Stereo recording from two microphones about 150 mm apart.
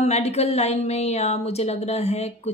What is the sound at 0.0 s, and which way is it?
Speech, 45° left (ahead or behind).